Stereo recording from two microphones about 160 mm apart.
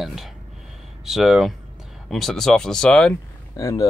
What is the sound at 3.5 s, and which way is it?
Speech, 20° left (ahead or behind).